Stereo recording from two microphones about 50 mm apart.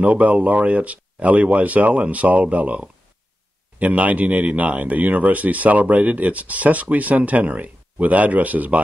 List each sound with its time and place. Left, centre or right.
0.0 s speech: right